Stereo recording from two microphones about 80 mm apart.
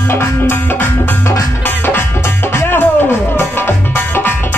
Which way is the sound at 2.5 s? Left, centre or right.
Left.